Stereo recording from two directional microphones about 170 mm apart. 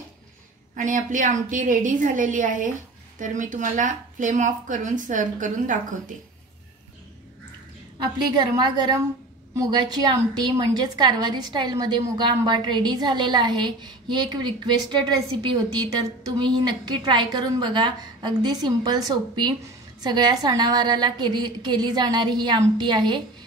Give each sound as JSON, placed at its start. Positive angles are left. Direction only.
{"t": 0.7, "sound": "a woman's voice", "side_deg": -50}
{"t": 8.3, "sound": "a woman's voice", "side_deg": -25}